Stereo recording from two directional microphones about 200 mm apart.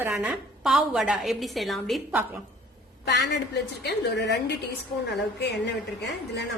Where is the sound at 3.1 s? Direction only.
55° left (ahead or behind).